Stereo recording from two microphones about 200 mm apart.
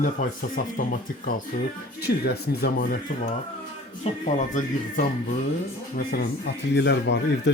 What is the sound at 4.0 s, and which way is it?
Speech, 35° left (ahead or behind).